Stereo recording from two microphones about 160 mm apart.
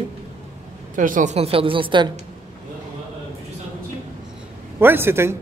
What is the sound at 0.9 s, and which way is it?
A woman's voice, 55° right (ahead or behind).